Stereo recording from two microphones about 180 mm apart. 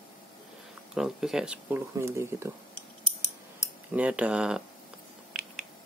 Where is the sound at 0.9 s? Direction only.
5° right (ahead or behind).